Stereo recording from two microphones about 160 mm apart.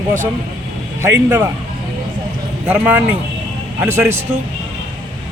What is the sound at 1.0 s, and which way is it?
Speech, 15° right (ahead or behind).